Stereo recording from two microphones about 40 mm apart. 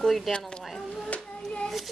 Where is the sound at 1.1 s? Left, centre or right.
Left.